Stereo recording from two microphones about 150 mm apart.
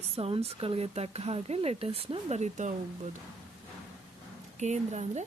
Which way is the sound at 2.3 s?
50° right (ahead or behind).